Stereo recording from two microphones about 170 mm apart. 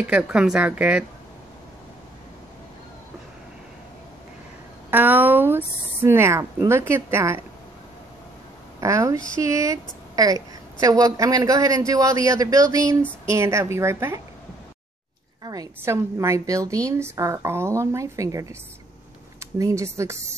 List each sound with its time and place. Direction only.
0.0 s a woman's voice: 5° right (ahead or behind)
4.9 s a woman's voice: 10° right (ahead or behind)
8.8 s a woman's voice: 20° right (ahead or behind)
15.4 s a woman's voice: 20° right (ahead or behind)